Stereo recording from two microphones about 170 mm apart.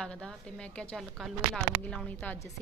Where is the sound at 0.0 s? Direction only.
5° left (ahead or behind).